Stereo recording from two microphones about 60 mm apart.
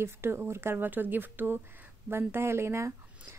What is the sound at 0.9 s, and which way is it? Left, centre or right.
Speech, right.